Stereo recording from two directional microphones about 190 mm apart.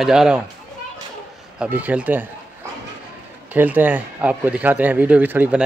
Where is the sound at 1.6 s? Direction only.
10° right (ahead or behind).